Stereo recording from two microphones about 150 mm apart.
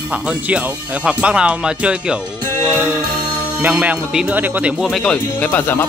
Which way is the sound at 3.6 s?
10° right (ahead or behind).